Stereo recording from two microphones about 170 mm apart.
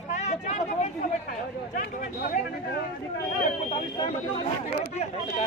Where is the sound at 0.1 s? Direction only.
40° left (ahead or behind).